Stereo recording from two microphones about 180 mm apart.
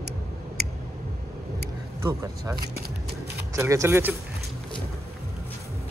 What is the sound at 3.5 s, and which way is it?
Speech, 15° right (ahead or behind).